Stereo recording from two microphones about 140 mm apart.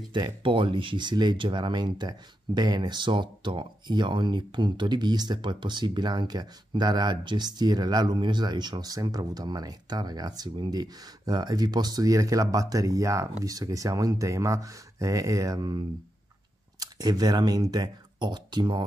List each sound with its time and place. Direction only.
0.1 s speech: 35° right (ahead or behind)
16.8 s speech: 25° right (ahead or behind)